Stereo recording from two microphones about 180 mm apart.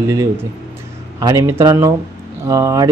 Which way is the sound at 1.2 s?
20° right (ahead or behind).